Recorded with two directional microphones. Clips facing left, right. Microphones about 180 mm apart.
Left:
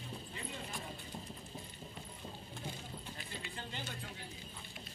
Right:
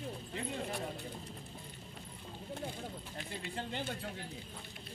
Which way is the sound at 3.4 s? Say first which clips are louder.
Right 9 dB; 60° right (ahead or behind).